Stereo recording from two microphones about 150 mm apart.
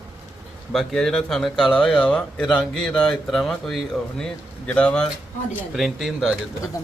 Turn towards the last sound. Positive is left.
turn(degrees=-5)  # may be behind; listen again after turning